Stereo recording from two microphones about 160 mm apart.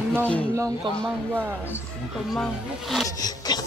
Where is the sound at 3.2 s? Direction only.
25° left (ahead or behind).